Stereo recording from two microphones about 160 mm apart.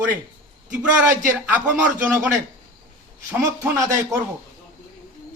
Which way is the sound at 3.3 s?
15° right (ahead or behind).